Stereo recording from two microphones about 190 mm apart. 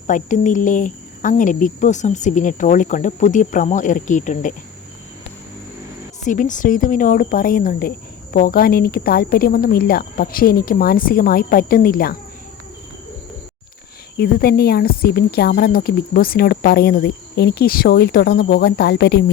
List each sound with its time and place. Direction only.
0.1 s speech: 40° left (ahead or behind)
6.2 s speech: 40° left (ahead or behind)
14.2 s a woman's voice: 55° left (ahead or behind)